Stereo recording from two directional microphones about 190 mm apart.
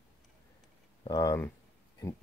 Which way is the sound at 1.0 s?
20° left (ahead or behind).